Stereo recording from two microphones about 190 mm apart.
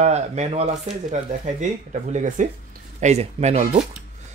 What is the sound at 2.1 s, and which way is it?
Speech, 40° right (ahead or behind).